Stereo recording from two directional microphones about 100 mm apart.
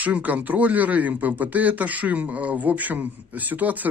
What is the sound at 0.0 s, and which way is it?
Speech, 15° right (ahead or behind).